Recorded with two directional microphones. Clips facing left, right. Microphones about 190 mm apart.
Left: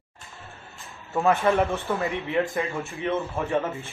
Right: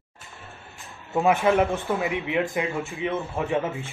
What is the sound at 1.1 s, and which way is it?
A man's voice, 15° right (ahead or behind).